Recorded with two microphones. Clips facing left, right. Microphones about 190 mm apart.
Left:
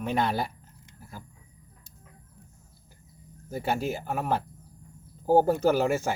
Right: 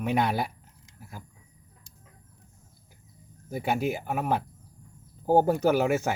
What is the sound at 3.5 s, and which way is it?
Speech, 15° right (ahead or behind).